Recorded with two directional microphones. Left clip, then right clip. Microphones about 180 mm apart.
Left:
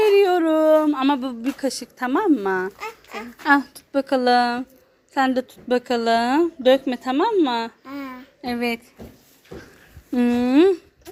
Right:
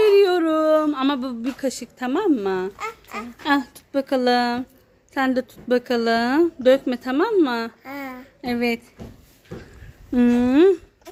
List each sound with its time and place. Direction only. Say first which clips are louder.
0.0 s a sound: even; centre (ahead or behind)
1.5 s a woman's voice: left 1 dB; 5° left (ahead or behind)
2.7 s speech: right 2 dB; 15° right (ahead or behind)
3.4 s a woman's voice: left 4 dB; centre (ahead or behind)
7.9 s child singing: right 1 dB; 15° right (ahead or behind)
8.4 s a woman's voice: right 1 dB; centre (ahead or behind)
10.1 s speech: right 1 dB; 5° right (ahead or behind)